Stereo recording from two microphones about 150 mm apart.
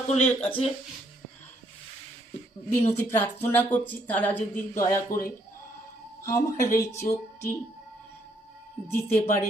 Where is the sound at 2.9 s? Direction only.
15° left (ahead or behind).